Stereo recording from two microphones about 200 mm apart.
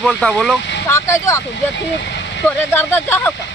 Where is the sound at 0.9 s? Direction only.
15° left (ahead or behind).